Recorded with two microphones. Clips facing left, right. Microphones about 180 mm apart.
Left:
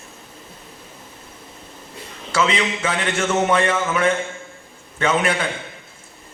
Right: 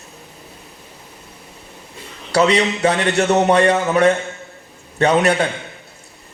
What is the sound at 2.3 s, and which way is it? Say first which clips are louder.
A man's voice: right 5 dB; 40° right (ahead or behind).